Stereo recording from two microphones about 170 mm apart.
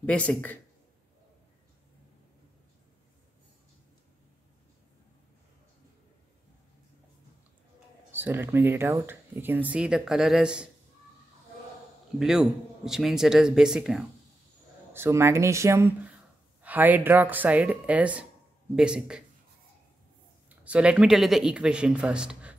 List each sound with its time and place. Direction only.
0.0 s speech: 5° left (ahead or behind)
8.1 s speech: 10° right (ahead or behind)
12.2 s speech: 5° right (ahead or behind)
14.9 s speech: 15° right (ahead or behind)
20.4 s speech: 5° right (ahead or behind)